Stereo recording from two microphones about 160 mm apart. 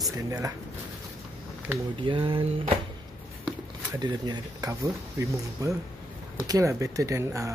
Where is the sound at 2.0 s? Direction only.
30° right (ahead or behind).